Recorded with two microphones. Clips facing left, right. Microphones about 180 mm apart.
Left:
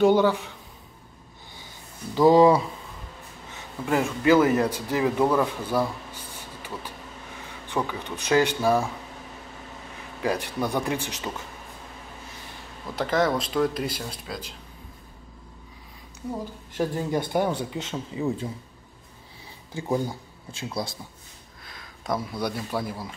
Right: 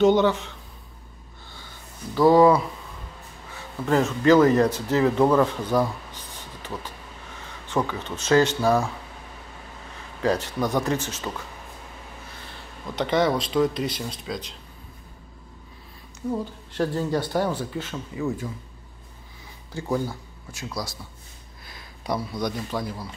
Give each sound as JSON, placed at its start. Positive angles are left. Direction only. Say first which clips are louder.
{"t": 0.0, "sound": "a man's voice", "louder": "right 1 dB", "side_deg": 10}
{"t": 2.1, "sound": "a man's voice", "louder": "even", "side_deg": 15}
{"t": 3.5, "sound": "a man's voice", "louder": "right 3 dB", "side_deg": 10}
{"t": 5.3, "sound": "a sound", "louder": "right 3 dB", "side_deg": 10}
{"t": 7.6, "sound": "a man's voice", "louder": "right 3 dB", "side_deg": 15}
{"t": 10.2, "sound": "a man's voice", "louder": "right 3 dB", "side_deg": 10}
{"t": 12.9, "sound": "speech", "louder": "right 2 dB", "side_deg": 0}
{"t": 16.7, "sound": "a man's voice", "louder": "right 1 dB", "side_deg": 15}
{"t": 19.7, "sound": "a man's voice", "louder": "even", "side_deg": 15}
{"t": 20.8, "sound": "speech", "louder": "left 2 dB", "side_deg": 25}
{"t": 22.0, "sound": "a man's voice", "louder": "right 1 dB", "side_deg": 5}